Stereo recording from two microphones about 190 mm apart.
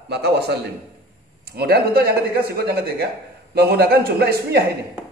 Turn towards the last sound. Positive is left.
turn(degrees=-55)  # may be behind; listen again after turning